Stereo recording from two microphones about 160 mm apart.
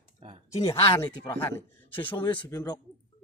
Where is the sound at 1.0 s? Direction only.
15° left (ahead or behind).